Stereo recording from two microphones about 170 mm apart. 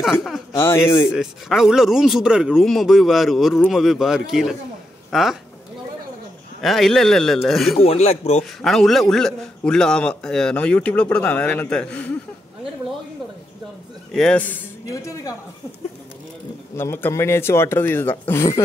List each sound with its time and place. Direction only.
0.0 s speech: centre (ahead or behind)
0.6 s a man's voice: 15° left (ahead or behind)
1.1 s speech: centre (ahead or behind)
6.6 s speech: centre (ahead or behind)
7.8 s speech: 40° left (ahead or behind)
8.4 s a man's voice: centre (ahead or behind)
14.1 s speech: 5° left (ahead or behind)
16.7 s a man's voice: 15° left (ahead or behind)